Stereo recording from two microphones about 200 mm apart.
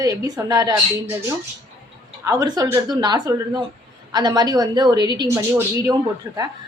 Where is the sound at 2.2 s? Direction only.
20° right (ahead or behind).